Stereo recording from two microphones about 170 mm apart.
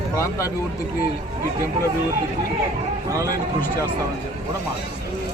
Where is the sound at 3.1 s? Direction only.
20° right (ahead or behind).